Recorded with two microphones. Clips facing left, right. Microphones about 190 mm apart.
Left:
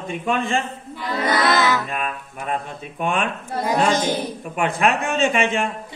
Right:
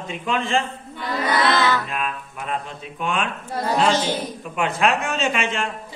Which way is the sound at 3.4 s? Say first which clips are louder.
Left 1 dB; 10° left (ahead or behind).